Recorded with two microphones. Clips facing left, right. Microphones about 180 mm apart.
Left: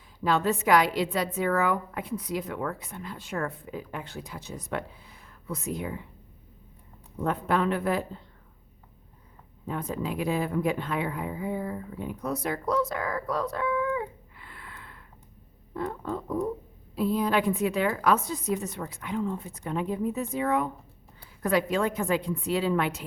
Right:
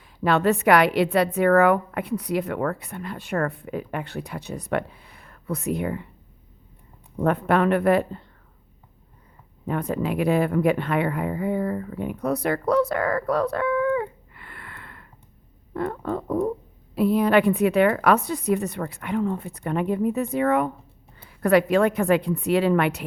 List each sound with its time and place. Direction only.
0.2 s a woman's voice: 65° right (ahead or behind)
7.2 s a woman's voice: 65° right (ahead or behind)
9.6 s a woman's voice: 65° right (ahead or behind)